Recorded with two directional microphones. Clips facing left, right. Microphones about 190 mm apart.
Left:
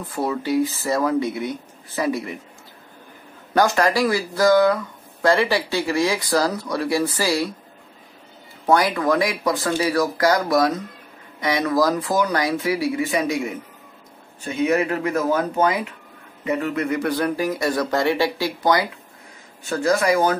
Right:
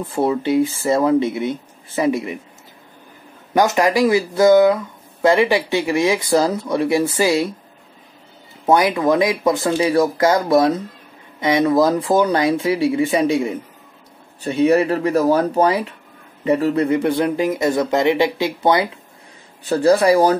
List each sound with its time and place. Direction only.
0.1 s speech: 25° right (ahead or behind)
3.5 s speech: 20° right (ahead or behind)
8.6 s speech: 20° right (ahead or behind)